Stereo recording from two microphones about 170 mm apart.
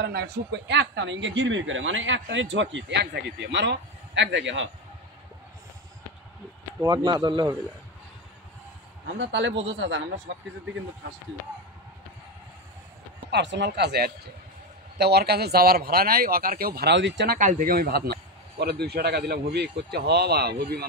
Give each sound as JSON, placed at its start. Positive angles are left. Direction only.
{"t": 0.0, "sound": "speech", "side_deg": -75}
{"t": 6.8, "sound": "speech", "side_deg": -25}
{"t": 9.2, "sound": "speech", "side_deg": -90}
{"t": 13.3, "sound": "a man's voice", "side_deg": -90}
{"t": 17.4, "sound": "a man's voice", "side_deg": -50}